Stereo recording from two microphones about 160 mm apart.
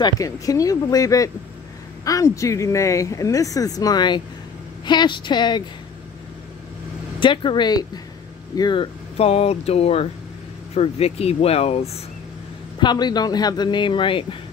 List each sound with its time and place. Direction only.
0.0 s speech: 20° left (ahead or behind)
7.2 s speech: 30° left (ahead or behind)
9.1 s speech: 40° left (ahead or behind)
12.7 s speech: 25° left (ahead or behind)